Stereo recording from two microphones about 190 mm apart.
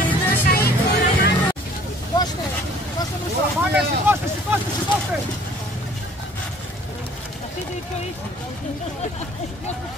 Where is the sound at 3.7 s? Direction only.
10° right (ahead or behind).